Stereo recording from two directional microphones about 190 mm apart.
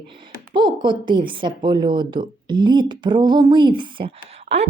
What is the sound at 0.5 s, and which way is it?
A woman's voice, 25° right (ahead or behind).